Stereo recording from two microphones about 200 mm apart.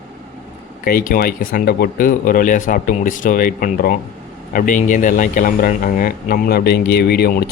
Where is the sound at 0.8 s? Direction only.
45° left (ahead or behind).